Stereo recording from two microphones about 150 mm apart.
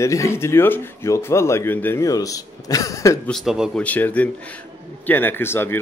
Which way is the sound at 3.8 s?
10° left (ahead or behind).